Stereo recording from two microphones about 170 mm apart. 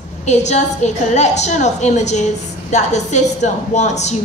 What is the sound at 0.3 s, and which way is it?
A woman's voice, 40° left (ahead or behind).